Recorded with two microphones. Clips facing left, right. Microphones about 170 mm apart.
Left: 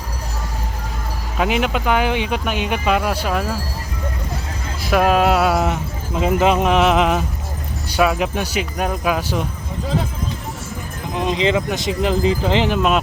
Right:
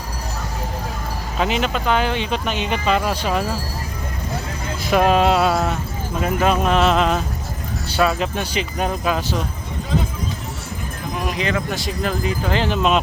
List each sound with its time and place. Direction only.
1.4 s speech: 10° left (ahead or behind)
4.9 s speech: 5° left (ahead or behind)
5.5 s speech: 15° left (ahead or behind)
11.1 s speech: 25° left (ahead or behind)
12.7 s speech: 5° left (ahead or behind)